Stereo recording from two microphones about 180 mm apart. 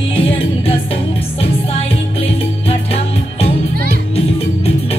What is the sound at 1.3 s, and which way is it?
Music, 30° left (ahead or behind).